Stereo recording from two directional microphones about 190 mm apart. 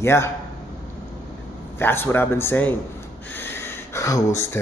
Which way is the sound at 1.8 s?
10° left (ahead or behind).